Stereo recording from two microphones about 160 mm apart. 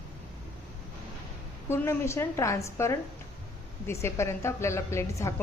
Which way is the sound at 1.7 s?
15° left (ahead or behind).